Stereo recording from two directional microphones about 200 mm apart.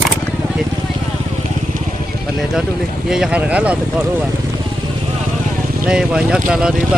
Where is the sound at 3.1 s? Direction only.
5° right (ahead or behind).